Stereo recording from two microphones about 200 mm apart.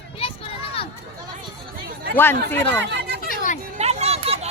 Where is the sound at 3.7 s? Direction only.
35° right (ahead or behind).